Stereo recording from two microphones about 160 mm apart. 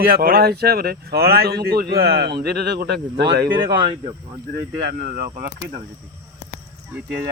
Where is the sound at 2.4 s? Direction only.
90° right.